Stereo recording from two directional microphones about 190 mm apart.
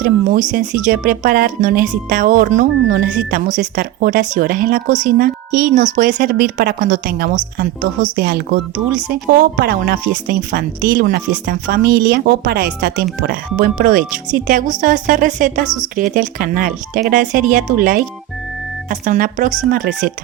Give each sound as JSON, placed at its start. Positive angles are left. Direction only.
{"t": 0.0, "sound": "speech", "side_deg": -45}